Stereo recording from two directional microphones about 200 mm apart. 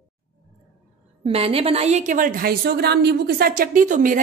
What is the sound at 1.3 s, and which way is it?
A woman's voice, 30° right (ahead or behind).